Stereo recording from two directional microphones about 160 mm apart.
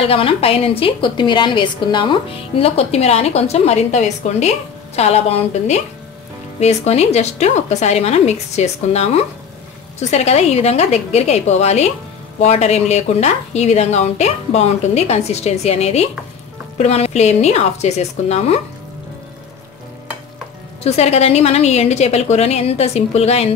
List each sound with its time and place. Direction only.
0.0 s a woman's voice: 35° left (ahead or behind)
20.8 s a woman's voice: 40° left (ahead or behind)